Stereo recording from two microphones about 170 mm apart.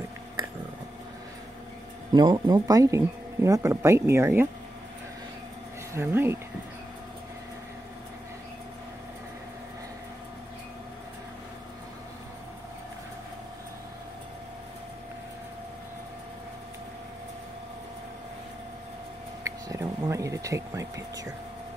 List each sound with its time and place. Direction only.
2.1 s speech: 25° right (ahead or behind)
5.9 s speech: 15° right (ahead or behind)
19.4 s a sound: 20° right (ahead or behind)